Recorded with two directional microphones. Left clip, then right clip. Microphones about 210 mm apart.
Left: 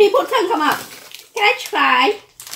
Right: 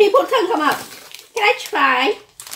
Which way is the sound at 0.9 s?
15° right (ahead or behind).